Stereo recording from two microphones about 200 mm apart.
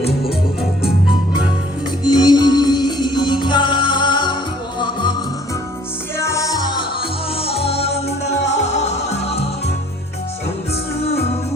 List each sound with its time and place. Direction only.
2.0 s music: 20° left (ahead or behind)
6.1 s music: 15° left (ahead or behind); by 9.4 s 35° left (ahead or behind)